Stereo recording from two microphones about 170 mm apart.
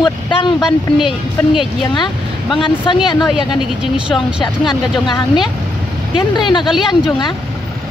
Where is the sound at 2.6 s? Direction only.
30° left (ahead or behind).